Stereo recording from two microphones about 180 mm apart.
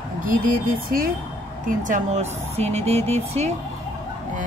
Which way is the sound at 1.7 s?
45° right (ahead or behind).